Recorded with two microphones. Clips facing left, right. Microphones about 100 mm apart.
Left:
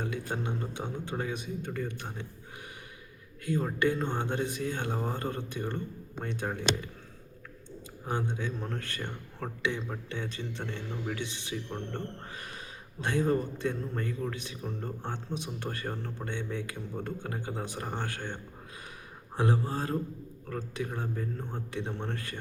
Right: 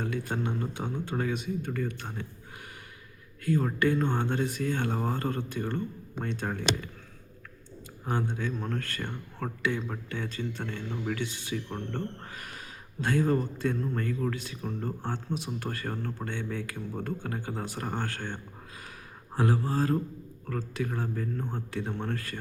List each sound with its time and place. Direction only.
0.0 s speech: 20° left (ahead or behind)
3.4 s speech: 20° left (ahead or behind)
8.0 s speech: 20° left (ahead or behind)
10.1 s speech: 20° left (ahead or behind)
19.4 s speech: 20° left (ahead or behind)